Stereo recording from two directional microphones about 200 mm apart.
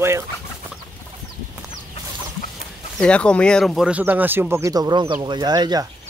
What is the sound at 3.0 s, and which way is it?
Speech, 5° left (ahead or behind).